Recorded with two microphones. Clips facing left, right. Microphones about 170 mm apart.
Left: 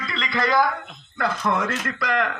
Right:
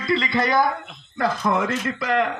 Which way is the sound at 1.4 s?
10° right (ahead or behind).